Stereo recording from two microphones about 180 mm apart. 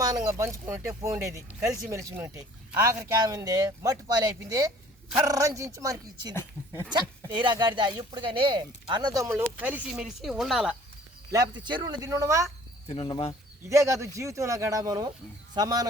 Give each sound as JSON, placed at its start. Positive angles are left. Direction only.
{"t": 0.0, "sound": "speech", "side_deg": -20}
{"t": 6.3, "sound": "speech", "side_deg": 10}
{"t": 7.3, "sound": "speech", "side_deg": -25}
{"t": 11.3, "sound": "speech", "side_deg": -20}
{"t": 12.9, "sound": "speech", "side_deg": 30}
{"t": 13.7, "sound": "speech", "side_deg": -15}